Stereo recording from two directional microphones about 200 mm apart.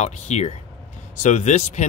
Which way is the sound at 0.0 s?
35° left (ahead or behind).